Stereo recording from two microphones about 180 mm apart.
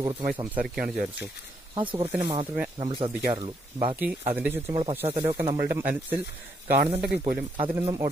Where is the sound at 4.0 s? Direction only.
10° right (ahead or behind).